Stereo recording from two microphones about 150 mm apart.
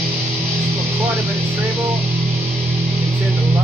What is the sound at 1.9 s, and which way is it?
Music, 45° right (ahead or behind).